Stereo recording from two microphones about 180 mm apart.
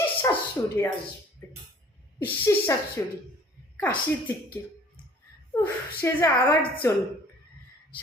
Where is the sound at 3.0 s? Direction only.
15° left (ahead or behind).